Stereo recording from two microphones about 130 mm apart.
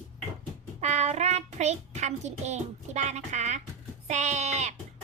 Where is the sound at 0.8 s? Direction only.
55° right (ahead or behind).